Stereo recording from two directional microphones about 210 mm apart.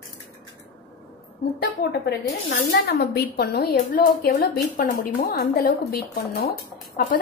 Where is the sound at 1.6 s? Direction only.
50° left (ahead or behind).